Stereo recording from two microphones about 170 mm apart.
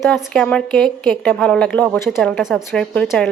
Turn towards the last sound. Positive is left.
turn(degrees=0)  # may be behind; listen again after turning